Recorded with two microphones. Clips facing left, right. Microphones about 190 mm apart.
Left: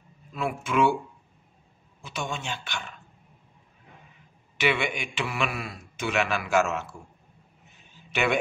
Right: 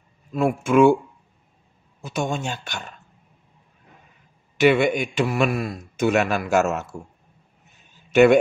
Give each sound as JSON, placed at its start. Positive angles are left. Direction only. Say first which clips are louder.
{"t": 0.3, "sound": "a man's voice", "louder": "right 9 dB", "side_deg": -45}
{"t": 2.0, "sound": "a man's voice", "louder": "right 8 dB", "side_deg": -45}
{"t": 4.6, "sound": "a man's voice", "louder": "right 9 dB", "side_deg": -40}
{"t": 8.1, "sound": "speech", "louder": "right 12 dB", "side_deg": -45}